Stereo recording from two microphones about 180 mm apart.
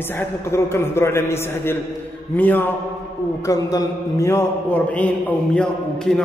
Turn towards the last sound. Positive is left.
turn(degrees=5)  # may be behind; listen again after turning